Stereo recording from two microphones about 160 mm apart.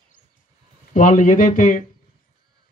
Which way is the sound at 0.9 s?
55° left (ahead or behind).